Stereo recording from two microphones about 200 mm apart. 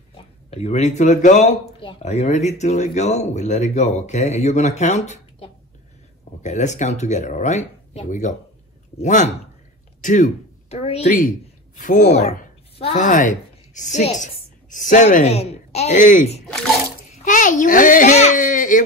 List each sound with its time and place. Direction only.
0.1 s speech: 30° left (ahead or behind)
17.1 s baby cry: 40° left (ahead or behind)